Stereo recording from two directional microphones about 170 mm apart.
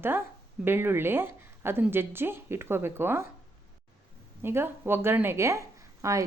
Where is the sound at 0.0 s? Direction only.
15° right (ahead or behind).